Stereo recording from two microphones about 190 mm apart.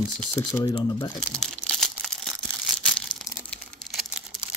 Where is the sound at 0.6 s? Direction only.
20° left (ahead or behind).